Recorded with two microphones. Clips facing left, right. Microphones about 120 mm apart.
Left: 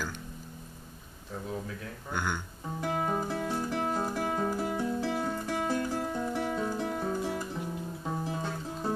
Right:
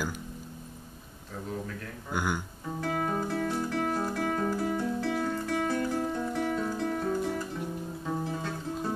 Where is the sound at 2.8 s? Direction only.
15° left (ahead or behind).